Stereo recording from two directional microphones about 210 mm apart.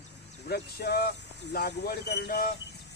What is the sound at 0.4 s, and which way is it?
Speech, 50° left (ahead or behind).